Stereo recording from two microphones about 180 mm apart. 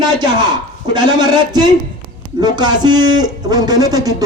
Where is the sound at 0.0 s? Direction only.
20° right (ahead or behind).